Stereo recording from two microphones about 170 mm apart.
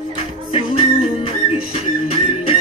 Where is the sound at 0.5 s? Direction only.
30° left (ahead or behind).